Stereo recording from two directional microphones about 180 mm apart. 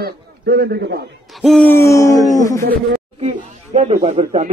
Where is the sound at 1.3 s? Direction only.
Centre (ahead or behind).